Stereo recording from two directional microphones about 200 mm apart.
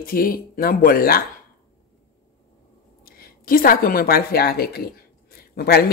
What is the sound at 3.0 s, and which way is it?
A woman's voice, 50° left (ahead or behind).